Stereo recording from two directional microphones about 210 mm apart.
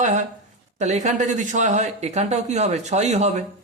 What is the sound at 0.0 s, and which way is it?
A man's voice, 35° right (ahead or behind).